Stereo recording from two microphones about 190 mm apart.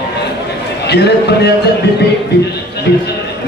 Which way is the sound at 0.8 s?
60° left (ahead or behind).